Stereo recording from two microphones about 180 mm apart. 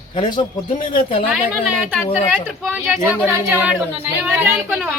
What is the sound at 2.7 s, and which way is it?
A woman's voice, 10° right (ahead or behind).